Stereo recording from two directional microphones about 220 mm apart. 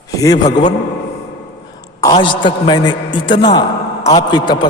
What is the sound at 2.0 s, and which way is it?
A man's voice, 20° left (ahead or behind).